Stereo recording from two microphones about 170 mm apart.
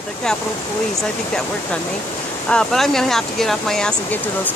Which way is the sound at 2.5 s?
5° left (ahead or behind).